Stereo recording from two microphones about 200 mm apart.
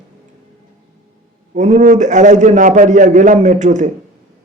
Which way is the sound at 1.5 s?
40° right (ahead or behind).